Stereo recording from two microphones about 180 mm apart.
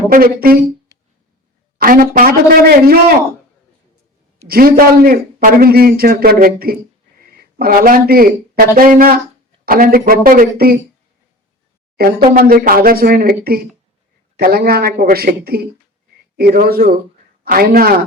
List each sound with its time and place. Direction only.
0.1 s a man's voice: 55° right (ahead or behind)
1.8 s a man's voice: 50° right (ahead or behind)
4.4 s a man's voice: 55° right (ahead or behind)
11.9 s a man's voice: 55° right (ahead or behind)